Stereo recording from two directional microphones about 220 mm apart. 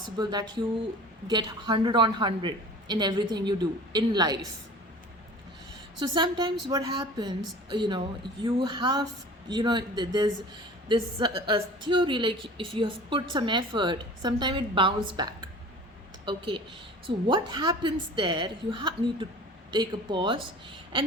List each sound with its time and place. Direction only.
0.0 s a woman's voice: 20° right (ahead or behind)
6.0 s a woman's voice: 20° right (ahead or behind)